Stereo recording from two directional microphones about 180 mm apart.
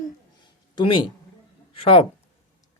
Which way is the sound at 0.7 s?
25° left (ahead or behind).